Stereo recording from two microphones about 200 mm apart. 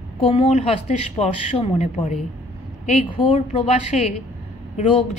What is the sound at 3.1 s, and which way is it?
Speech, 25° left (ahead or behind).